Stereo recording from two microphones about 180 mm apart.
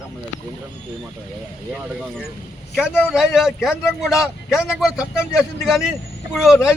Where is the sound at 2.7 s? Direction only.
5° right (ahead or behind).